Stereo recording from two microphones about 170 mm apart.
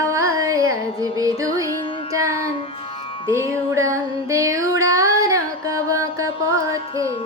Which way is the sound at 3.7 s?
20° right (ahead or behind).